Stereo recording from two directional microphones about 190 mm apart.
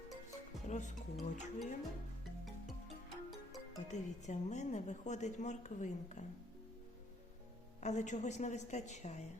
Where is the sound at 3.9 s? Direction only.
40° left (ahead or behind).